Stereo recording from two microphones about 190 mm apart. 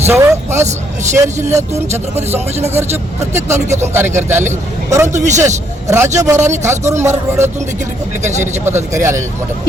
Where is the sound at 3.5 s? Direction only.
35° right (ahead or behind).